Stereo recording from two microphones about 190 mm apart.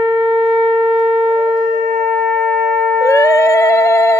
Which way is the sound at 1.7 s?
45° right (ahead or behind).